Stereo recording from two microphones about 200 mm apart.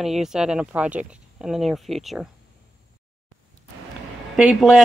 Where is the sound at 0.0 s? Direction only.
Centre (ahead or behind).